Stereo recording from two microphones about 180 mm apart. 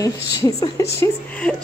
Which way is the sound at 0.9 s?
5° left (ahead or behind).